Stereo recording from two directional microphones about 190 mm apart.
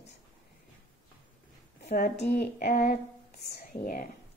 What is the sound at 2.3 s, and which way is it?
Speech, 55° left (ahead or behind).